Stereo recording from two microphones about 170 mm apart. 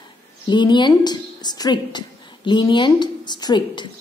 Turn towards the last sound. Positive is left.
turn(degrees=25)  # may be behind; listen again after turning